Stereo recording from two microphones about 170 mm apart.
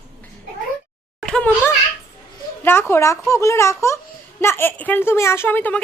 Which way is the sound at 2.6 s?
15° left (ahead or behind).